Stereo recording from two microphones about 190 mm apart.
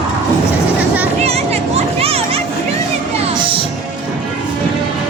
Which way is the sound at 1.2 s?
35° right (ahead or behind).